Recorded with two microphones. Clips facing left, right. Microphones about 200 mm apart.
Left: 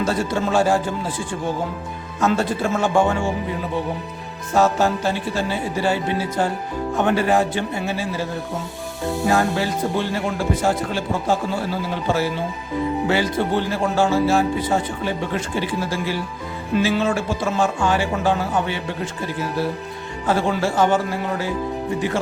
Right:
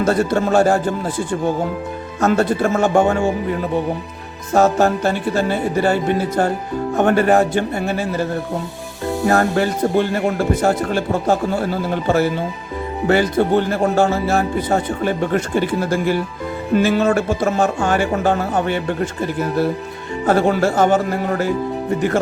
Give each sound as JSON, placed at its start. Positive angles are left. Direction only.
{"t": 0.0, "sound": "speech", "side_deg": -55}
{"t": 4.5, "sound": "speech", "side_deg": -50}
{"t": 20.2, "sound": "speech", "side_deg": -55}